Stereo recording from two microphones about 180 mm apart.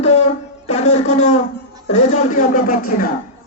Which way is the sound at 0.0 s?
35° left (ahead or behind).